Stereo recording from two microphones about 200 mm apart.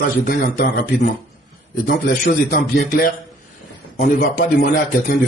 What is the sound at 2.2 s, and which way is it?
Speech, 50° left (ahead or behind).